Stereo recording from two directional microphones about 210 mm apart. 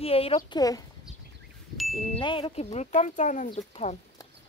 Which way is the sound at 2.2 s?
25° left (ahead or behind).